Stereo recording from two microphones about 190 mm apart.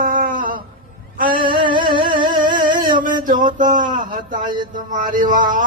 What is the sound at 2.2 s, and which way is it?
Music, 45° right (ahead or behind).